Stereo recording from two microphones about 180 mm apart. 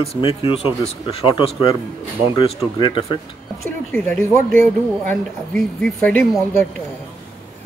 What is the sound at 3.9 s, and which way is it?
Speech, 10° left (ahead or behind).